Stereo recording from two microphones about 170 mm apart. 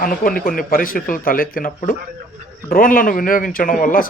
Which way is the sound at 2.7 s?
55° left (ahead or behind).